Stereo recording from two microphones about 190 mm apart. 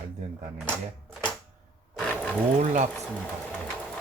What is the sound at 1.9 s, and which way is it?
Roaring cats, 5° left (ahead or behind).